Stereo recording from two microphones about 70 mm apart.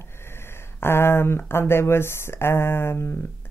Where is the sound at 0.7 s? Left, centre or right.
Left.